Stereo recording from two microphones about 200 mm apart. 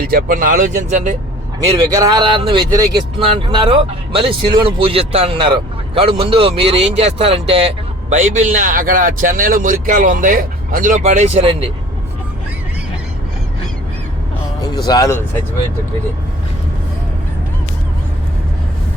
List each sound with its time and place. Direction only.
0.0 s speech: 45° right (ahead or behind)
1.9 s a man's voice: 15° right (ahead or behind)
14.6 s speech: 20° left (ahead or behind)